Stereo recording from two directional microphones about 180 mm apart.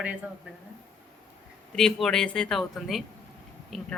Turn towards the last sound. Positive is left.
turn(degrees=0)  # may be behind; listen again after turning